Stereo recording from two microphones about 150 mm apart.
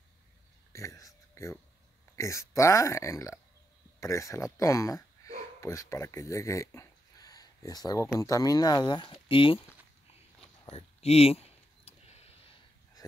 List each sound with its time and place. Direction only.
0.7 s speech: 20° left (ahead or behind)
10.7 s clicking: 40° left (ahead or behind)